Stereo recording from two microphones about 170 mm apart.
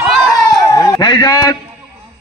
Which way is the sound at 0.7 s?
20° left (ahead or behind).